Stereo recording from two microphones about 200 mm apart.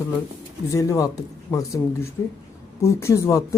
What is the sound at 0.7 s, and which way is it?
Speech, 15° left (ahead or behind).